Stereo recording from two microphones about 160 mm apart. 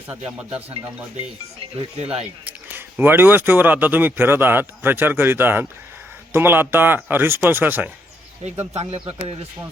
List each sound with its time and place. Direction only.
2.4 s speech: 10° right (ahead or behind)
8.7 s a man's voice: 40° right (ahead or behind)